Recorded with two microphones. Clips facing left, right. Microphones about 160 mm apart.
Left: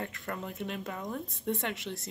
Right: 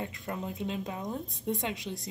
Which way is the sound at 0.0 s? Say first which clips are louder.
Right 1 dB; 15° right (ahead or behind).